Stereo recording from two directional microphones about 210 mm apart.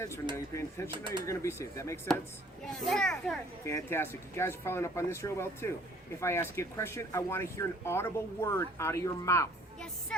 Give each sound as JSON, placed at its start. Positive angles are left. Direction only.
{"t": 0.3, "sound": "speech", "side_deg": 15}
{"t": 0.9, "sound": "speech", "side_deg": -25}
{"t": 1.2, "sound": "speech", "side_deg": 15}
{"t": 2.7, "sound": "a child's voice", "side_deg": 0}